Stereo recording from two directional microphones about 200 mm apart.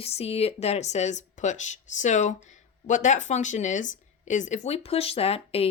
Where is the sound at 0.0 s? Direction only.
30° left (ahead or behind).